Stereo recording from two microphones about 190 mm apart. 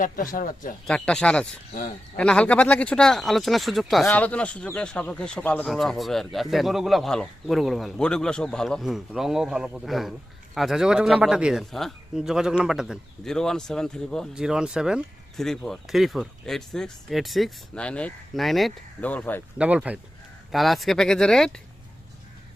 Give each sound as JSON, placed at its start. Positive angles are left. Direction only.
{"t": 0.0, "sound": "speech", "side_deg": 45}
{"t": 0.9, "sound": "speech", "side_deg": 5}
{"t": 19.5, "sound": "speech", "side_deg": -5}